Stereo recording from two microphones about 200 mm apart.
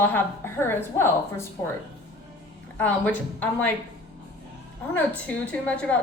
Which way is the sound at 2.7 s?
10° left (ahead or behind).